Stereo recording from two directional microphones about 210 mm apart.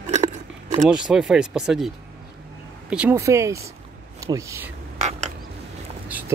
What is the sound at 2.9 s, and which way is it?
Speech, 10° right (ahead or behind).